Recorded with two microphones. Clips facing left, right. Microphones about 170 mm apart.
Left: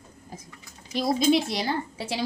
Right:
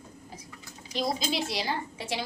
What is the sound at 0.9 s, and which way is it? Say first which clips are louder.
Speech: left 8 dB; 50° left (ahead or behind).